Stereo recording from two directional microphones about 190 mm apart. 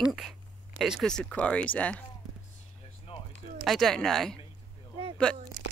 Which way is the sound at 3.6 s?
Centre (ahead or behind).